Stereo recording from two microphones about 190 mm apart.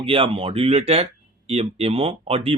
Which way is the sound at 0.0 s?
30° right (ahead or behind).